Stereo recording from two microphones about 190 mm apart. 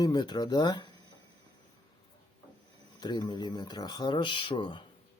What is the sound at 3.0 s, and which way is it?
Speech, 20° left (ahead or behind).